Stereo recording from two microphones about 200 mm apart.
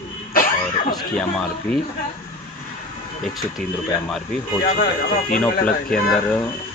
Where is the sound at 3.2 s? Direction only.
Centre (ahead or behind).